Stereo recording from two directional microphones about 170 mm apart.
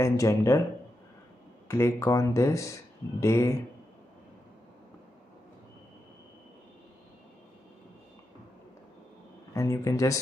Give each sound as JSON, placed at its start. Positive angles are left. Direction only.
{"t": 0.0, "sound": "speech", "side_deg": 20}
{"t": 1.7, "sound": "speech", "side_deg": 15}
{"t": 9.5, "sound": "speech", "side_deg": 20}